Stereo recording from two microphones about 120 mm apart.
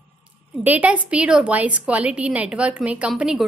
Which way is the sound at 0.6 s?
15° right (ahead or behind).